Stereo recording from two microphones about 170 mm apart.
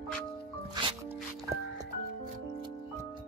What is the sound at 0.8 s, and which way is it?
Music, 25° right (ahead or behind).